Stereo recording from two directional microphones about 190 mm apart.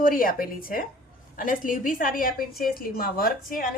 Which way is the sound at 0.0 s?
50° left (ahead or behind).